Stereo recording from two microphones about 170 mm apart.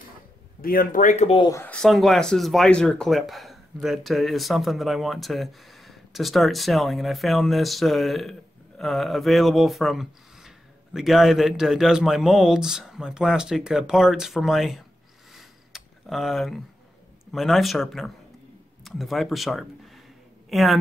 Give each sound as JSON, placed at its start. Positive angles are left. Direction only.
{"t": 0.6, "sound": "speech", "side_deg": 60}
{"t": 1.5, "sound": "speech", "side_deg": 10}
{"t": 15.3, "sound": "a sound", "side_deg": 0}
{"t": 17.3, "sound": "a woman's voice", "side_deg": 0}